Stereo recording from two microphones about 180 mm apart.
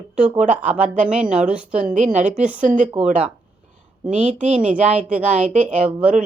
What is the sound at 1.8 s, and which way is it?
Speech, 45° right (ahead or behind).